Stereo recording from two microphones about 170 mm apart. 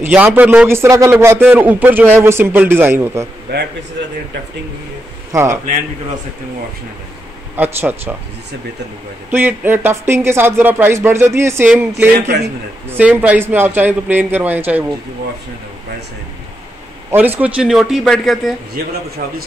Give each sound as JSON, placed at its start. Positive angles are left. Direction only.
{"t": 0.0, "sound": "a man's voice", "side_deg": -10}
{"t": 3.5, "sound": "a man's voice", "side_deg": -80}
{"t": 5.3, "sound": "speech", "side_deg": -15}
{"t": 7.5, "sound": "a man's voice", "side_deg": -10}
{"t": 9.3, "sound": "a man's voice", "side_deg": -10}
{"t": 17.1, "sound": "a man's voice", "side_deg": -10}